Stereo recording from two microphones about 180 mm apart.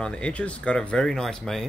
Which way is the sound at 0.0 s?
5° left (ahead or behind).